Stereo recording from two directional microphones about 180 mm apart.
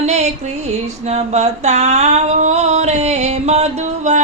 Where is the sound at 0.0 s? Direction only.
40° right (ahead or behind).